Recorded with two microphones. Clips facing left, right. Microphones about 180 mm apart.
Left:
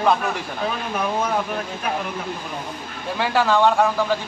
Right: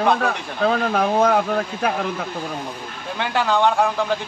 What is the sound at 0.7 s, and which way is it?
Speech, 70° right (ahead or behind).